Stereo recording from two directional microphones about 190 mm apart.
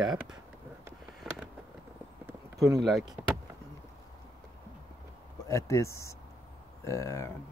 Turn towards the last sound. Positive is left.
turn(degrees=15)  # may be behind; listen again after turning